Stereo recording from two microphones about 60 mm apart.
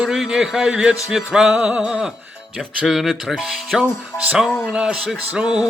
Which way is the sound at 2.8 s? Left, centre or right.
Centre.